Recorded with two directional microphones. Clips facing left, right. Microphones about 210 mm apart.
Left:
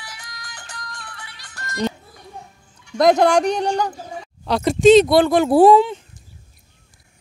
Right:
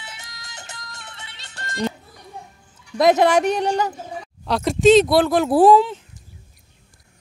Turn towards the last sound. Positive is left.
turn(degrees=0)  # may be behind; listen again after turning